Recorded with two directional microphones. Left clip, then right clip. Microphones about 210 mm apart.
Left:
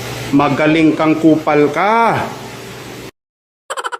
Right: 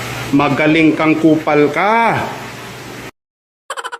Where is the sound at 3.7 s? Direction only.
Centre (ahead or behind).